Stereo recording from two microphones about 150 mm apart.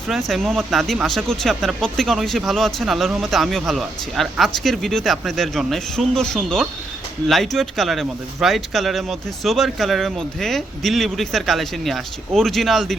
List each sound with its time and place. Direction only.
0.1 s speech: centre (ahead or behind)